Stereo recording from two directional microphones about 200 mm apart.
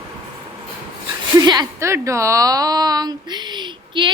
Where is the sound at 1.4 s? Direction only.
20° right (ahead or behind).